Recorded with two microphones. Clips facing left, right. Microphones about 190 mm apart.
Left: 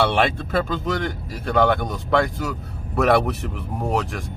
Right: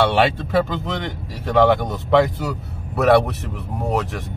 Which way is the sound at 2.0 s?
5° right (ahead or behind).